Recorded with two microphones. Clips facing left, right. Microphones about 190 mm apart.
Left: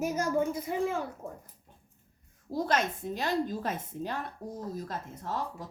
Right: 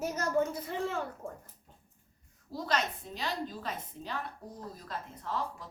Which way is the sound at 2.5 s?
50° left (ahead or behind).